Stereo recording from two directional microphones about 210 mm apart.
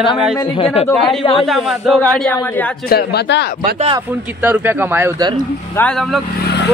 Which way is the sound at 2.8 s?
50° left (ahead or behind).